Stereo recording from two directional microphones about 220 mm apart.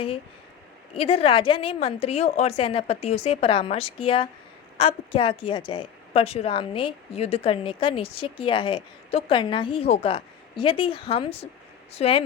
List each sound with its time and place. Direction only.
0.9 s speech: 25° left (ahead or behind)